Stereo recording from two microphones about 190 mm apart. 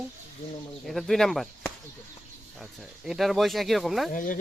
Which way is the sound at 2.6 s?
Centre (ahead or behind).